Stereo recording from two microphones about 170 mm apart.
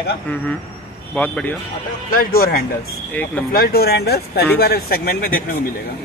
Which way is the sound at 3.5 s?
65° left (ahead or behind).